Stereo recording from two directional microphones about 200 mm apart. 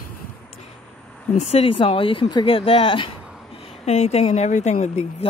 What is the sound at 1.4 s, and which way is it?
Speech, 30° left (ahead or behind).